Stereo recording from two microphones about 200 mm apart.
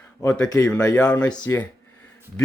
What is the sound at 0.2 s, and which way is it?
Speech, 20° left (ahead or behind).